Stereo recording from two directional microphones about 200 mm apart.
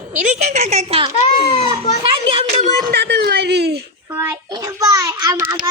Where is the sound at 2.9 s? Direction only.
55° right (ahead or behind).